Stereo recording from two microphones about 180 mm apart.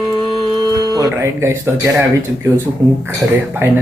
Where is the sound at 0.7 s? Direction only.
20° right (ahead or behind).